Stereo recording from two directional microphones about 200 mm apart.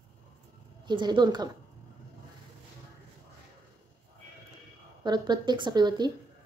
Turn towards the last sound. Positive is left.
turn(degrees=-20)  # may be behind; listen again after turning